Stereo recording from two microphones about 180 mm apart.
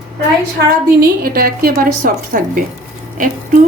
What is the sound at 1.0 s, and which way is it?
A woman's voice, 60° right (ahead or behind).